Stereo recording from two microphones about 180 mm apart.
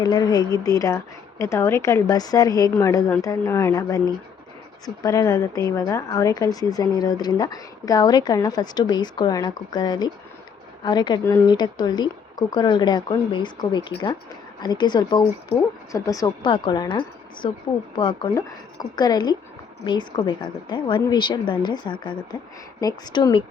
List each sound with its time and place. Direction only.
0.0 s speech: 20° left (ahead or behind)